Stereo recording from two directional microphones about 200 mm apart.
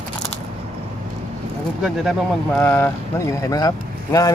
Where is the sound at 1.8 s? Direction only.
Centre (ahead or behind).